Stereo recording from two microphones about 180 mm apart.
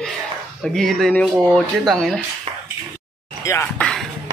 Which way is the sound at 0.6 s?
Centre (ahead or behind).